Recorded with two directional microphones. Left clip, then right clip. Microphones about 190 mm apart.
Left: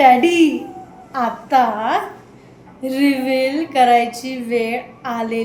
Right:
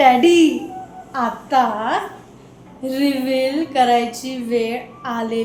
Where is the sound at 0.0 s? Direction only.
Centre (ahead or behind).